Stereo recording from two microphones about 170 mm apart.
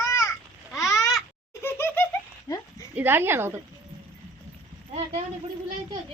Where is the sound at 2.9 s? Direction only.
10° right (ahead or behind).